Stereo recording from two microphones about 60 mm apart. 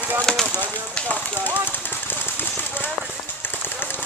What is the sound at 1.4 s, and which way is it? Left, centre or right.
Speech, right.